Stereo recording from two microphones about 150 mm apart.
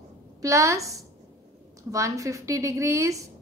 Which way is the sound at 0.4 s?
20° right (ahead or behind).